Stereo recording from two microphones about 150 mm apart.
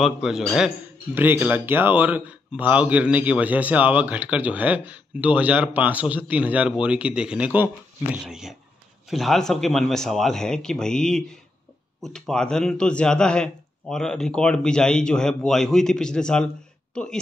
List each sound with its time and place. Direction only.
0.0 s a man's voice: centre (ahead or behind)